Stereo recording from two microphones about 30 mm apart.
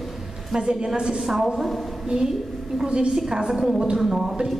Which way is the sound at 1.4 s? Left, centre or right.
Centre.